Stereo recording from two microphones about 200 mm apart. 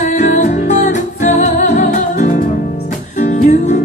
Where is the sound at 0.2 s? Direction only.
35° left (ahead or behind).